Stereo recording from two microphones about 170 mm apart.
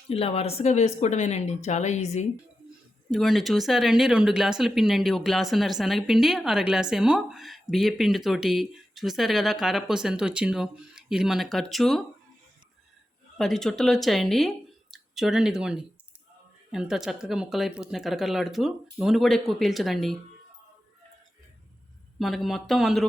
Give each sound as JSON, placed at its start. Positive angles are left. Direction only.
{"t": 0.1, "sound": "speech", "side_deg": 35}
{"t": 3.1, "sound": "speech", "side_deg": 0}
{"t": 13.3, "sound": "speech", "side_deg": 0}
{"t": 22.2, "sound": "speech", "side_deg": 0}